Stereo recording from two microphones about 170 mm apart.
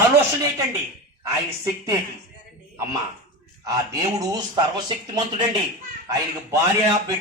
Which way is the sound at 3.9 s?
25° right (ahead or behind).